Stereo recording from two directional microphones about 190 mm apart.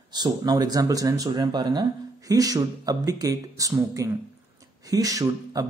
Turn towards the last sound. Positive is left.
turn(degrees=-20)  # may be behind; listen again after turning